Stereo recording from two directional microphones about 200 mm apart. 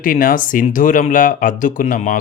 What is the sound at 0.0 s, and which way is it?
Speech, 45° left (ahead or behind).